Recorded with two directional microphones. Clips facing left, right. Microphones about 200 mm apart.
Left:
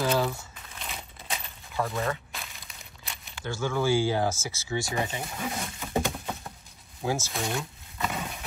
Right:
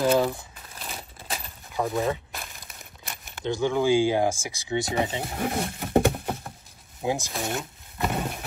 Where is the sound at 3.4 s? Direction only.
15° right (ahead or behind).